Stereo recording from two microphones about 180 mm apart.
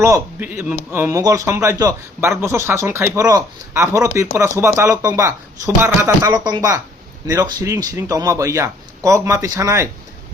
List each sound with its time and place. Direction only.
0.0 s speech: 15° right (ahead or behind)